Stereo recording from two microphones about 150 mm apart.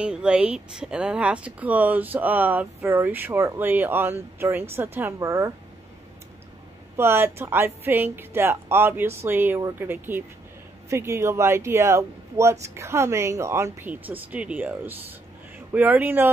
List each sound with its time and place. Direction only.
0.0 s speech: 5° right (ahead or behind)
7.0 s speech: 15° right (ahead or behind)